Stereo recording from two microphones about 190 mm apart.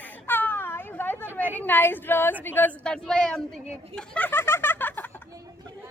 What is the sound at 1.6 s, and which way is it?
A woman's voice, 10° left (ahead or behind).